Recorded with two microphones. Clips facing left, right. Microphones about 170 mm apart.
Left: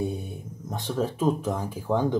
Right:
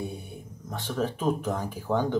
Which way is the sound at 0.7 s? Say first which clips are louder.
Left 2 dB; 15° left (ahead or behind).